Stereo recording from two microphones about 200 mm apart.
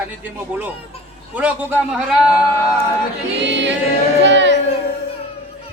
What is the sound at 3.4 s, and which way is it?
Music, 60° right (ahead or behind).